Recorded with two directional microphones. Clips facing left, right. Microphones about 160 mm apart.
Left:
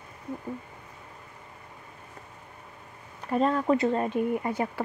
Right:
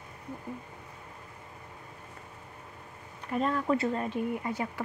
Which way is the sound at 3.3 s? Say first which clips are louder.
Left 4 dB; 35° left (ahead or behind).